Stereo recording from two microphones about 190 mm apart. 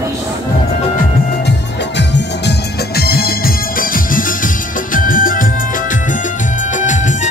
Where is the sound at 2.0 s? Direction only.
65° left (ahead or behind).